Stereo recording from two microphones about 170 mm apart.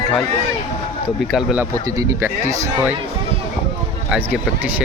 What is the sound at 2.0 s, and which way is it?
Speech, 20° right (ahead or behind).